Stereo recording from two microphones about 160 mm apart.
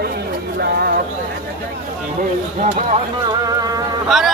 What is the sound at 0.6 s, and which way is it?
Bird, 80° right.